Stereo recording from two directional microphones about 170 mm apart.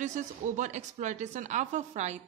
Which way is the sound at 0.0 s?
45° right (ahead or behind).